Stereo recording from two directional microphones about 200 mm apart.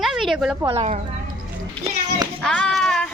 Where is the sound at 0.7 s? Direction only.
35° right (ahead or behind).